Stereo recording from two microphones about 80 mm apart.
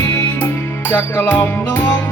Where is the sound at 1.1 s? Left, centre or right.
Left.